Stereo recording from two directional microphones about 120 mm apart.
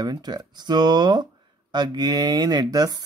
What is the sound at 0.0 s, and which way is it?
Speech, 35° right (ahead or behind).